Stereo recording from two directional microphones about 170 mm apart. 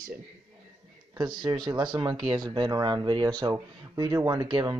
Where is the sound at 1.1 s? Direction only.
25° right (ahead or behind).